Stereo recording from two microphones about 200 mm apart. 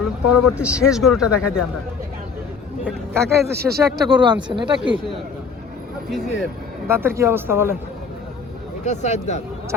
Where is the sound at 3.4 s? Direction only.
55° right (ahead or behind).